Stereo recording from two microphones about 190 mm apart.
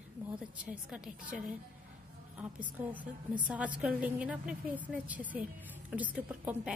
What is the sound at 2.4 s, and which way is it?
A woman's voice, 10° right (ahead or behind).